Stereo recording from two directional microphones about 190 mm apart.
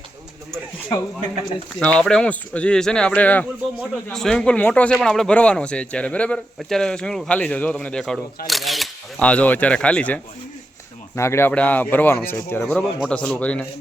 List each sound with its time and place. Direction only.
0.9 s a man's voice: 20° left (ahead or behind)
1.8 s speech: 5° left (ahead or behind)